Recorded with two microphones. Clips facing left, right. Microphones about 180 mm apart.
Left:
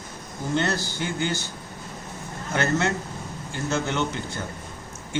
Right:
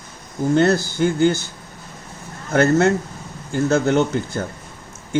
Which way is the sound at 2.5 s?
50° right (ahead or behind).